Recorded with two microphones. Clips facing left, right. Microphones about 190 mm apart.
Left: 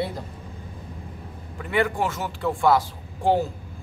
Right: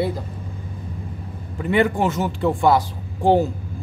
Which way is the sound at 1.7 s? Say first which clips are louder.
Right 5 dB; 20° right (ahead or behind).